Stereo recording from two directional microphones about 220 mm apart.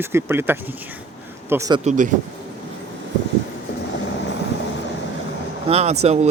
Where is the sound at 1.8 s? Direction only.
30° right (ahead or behind).